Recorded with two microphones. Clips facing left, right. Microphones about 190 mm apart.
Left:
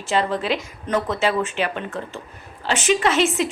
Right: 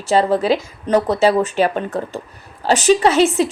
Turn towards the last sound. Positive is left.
turn(degrees=-35)  # may be behind; listen again after turning